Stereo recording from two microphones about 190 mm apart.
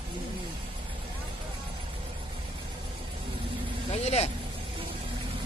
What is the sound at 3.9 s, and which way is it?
Vehicle, 35° left (ahead or behind).